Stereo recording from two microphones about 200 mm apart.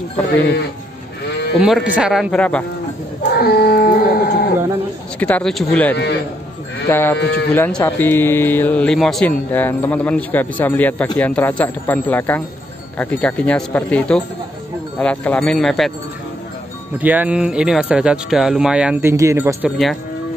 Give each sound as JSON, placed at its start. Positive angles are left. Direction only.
{"t": 1.6, "sound": "speech", "side_deg": 0}
{"t": 3.3, "sound": "a sound", "side_deg": 50}
{"t": 5.2, "sound": "speech", "side_deg": 5}
{"t": 7.2, "sound": "speech", "side_deg": 60}
{"t": 7.5, "sound": "speech", "side_deg": 10}
{"t": 17.0, "sound": "speech", "side_deg": -10}